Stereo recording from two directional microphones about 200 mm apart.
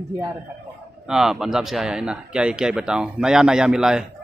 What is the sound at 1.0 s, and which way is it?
A man's voice, 5° right (ahead or behind).